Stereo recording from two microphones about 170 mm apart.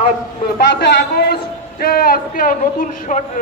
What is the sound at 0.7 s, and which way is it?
A man's voice, 75° left (ahead or behind).